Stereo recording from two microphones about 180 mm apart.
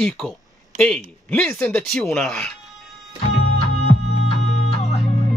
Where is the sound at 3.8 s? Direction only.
35° left (ahead or behind).